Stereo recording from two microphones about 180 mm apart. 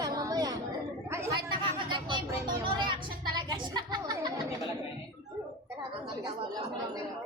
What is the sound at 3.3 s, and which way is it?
Speech, 25° right (ahead or behind).